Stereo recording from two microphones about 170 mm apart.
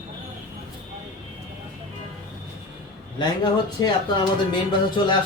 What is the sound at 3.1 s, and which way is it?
A man's voice, 30° left (ahead or behind).